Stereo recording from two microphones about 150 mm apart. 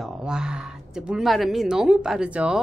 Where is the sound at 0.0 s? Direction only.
5° right (ahead or behind).